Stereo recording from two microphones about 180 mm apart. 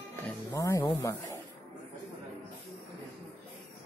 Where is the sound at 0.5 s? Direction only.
20° left (ahead or behind).